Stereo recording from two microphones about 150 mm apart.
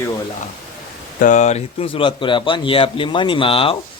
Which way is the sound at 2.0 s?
35° left (ahead or behind).